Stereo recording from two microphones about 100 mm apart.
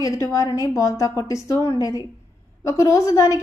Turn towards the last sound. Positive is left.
turn(degrees=30)  # may be behind; listen again after turning